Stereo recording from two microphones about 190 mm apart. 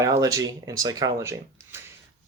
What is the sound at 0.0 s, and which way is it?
Speech, 15° right (ahead or behind).